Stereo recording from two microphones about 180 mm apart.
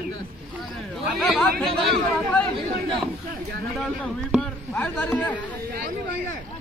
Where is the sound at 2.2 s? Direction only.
5° left (ahead or behind).